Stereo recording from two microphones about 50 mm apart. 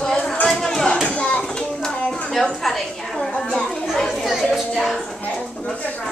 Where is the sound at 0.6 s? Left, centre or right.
Centre.